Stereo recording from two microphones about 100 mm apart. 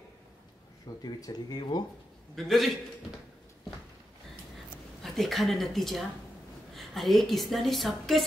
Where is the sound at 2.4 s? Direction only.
5° left (ahead or behind).